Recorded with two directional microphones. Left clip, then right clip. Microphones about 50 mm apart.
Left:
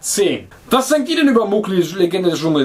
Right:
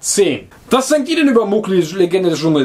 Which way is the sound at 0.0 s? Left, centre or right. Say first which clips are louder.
Right 2 dB; right.